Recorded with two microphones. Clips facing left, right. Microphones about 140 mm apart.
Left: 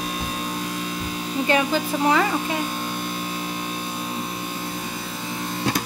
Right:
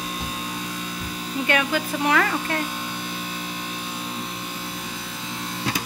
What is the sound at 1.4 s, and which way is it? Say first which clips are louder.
Speech: left 2 dB; 30° left (ahead or behind).